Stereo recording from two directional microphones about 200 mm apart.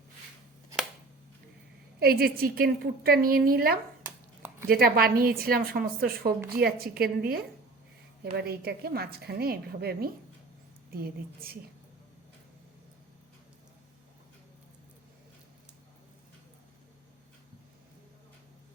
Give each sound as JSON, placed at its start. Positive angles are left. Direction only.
{"t": 2.0, "sound": "a woman's voice", "side_deg": -50}